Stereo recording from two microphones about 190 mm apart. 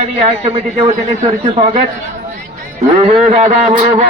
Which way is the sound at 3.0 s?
35° right (ahead or behind).